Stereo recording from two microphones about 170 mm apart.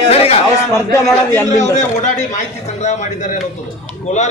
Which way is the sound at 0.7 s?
15° left (ahead or behind).